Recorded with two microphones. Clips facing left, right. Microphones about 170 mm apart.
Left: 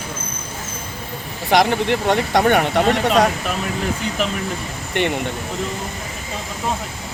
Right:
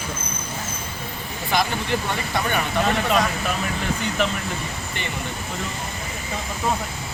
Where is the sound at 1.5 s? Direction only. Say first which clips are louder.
Left 7 dB; 70° left (ahead or behind).